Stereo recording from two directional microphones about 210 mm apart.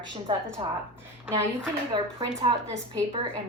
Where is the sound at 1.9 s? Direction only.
25° right (ahead or behind).